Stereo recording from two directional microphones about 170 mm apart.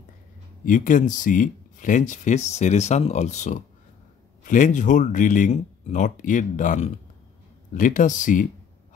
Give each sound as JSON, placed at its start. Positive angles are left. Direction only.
{"t": 0.7, "sound": "speech", "side_deg": 50}